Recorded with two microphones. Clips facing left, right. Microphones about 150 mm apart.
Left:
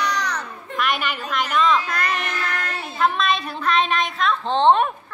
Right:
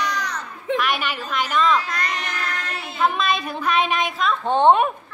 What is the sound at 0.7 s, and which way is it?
A woman's voice, centre (ahead or behind).